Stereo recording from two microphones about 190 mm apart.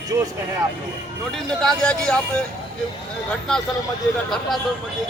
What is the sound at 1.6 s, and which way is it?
Speech, 5° left (ahead or behind).